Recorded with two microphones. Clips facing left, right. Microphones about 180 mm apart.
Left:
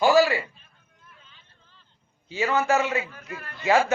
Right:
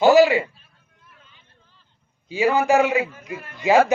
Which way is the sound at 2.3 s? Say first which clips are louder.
Right 5 dB; 10° right (ahead or behind).